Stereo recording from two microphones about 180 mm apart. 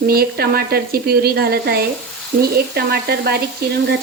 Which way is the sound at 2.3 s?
50° right (ahead or behind).